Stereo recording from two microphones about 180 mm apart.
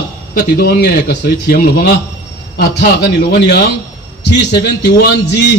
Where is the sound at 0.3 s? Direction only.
55° left (ahead or behind).